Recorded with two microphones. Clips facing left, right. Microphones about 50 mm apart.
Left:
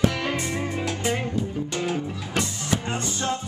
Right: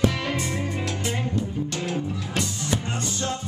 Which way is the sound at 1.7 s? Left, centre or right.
Centre.